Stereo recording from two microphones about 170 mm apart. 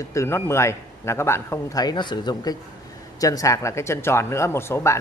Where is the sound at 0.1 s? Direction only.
15° left (ahead or behind).